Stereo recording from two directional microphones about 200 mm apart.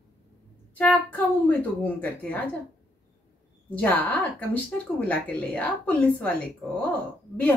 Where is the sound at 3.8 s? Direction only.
10° left (ahead or behind).